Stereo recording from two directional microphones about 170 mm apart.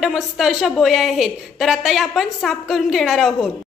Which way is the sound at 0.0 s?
Centre (ahead or behind).